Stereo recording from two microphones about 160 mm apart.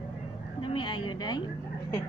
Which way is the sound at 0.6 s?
30° left (ahead or behind).